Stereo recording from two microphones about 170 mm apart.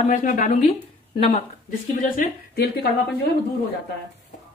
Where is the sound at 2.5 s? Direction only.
70° left (ahead or behind).